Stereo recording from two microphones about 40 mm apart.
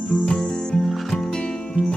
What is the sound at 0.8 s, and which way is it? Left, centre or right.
Music, centre.